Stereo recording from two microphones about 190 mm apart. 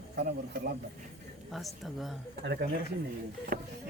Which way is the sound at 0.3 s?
55° right (ahead or behind).